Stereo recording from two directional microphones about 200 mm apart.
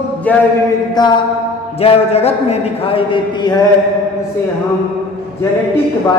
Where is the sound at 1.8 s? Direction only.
30° left (ahead or behind).